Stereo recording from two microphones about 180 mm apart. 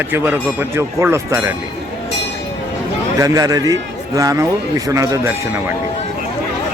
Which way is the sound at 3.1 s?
20° right (ahead or behind).